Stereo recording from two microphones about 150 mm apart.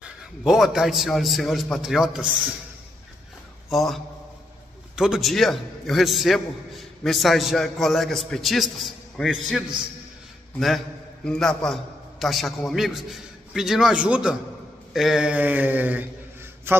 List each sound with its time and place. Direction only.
0.0 s a man's voice: 5° right (ahead or behind)
3.7 s a man's voice: centre (ahead or behind)
11.2 s a man's voice: 5° left (ahead or behind)
16.7 s mantra: 15° right (ahead or behind)